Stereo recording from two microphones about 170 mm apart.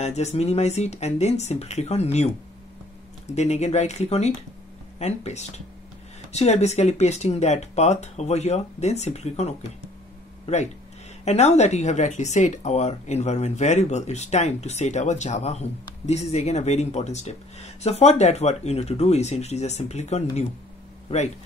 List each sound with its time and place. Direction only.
0.0 s speech: 40° left (ahead or behind)
3.3 s speech: 40° left (ahead or behind)